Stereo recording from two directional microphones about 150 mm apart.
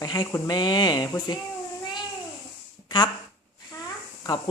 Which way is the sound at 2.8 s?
25° left (ahead or behind).